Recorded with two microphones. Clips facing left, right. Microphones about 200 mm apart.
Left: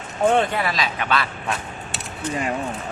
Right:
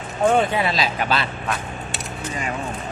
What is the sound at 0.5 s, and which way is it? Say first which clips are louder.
Speech: right 2 dB; 25° right (ahead or behind).